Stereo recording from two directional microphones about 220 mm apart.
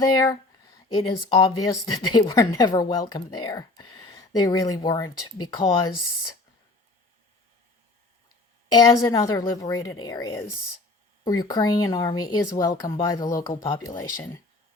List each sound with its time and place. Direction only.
0.9 s speech: 20° left (ahead or behind)
8.7 s speech: 15° left (ahead or behind)